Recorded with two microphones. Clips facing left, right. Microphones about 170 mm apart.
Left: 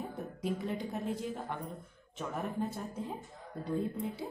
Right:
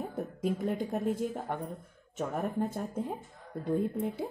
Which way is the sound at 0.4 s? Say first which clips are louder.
Right 4 dB; 50° right (ahead or behind).